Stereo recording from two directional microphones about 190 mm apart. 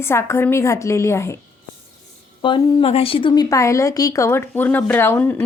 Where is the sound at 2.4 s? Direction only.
25° left (ahead or behind).